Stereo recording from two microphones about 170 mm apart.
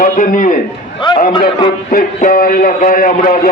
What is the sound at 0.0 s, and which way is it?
Speech, 50° left (ahead or behind).